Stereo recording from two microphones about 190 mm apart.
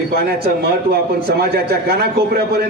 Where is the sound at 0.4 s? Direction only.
55° right (ahead or behind).